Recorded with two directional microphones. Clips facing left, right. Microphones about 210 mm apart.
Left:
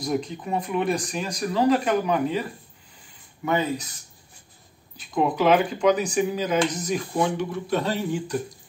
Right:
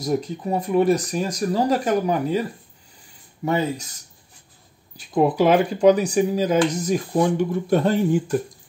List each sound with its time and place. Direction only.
0.0 s speech: 40° right (ahead or behind)
3.4 s speech: 40° right (ahead or behind)
5.1 s speech: 40° right (ahead or behind)